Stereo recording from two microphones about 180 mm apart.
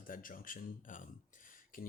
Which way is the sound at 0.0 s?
50° left (ahead or behind).